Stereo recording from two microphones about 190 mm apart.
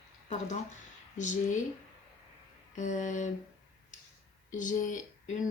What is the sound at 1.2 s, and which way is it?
Speech, 40° left (ahead or behind).